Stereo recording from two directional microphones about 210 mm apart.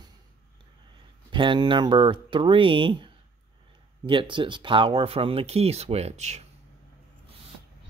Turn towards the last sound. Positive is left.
turn(degrees=-30)  # may be behind; listen again after turning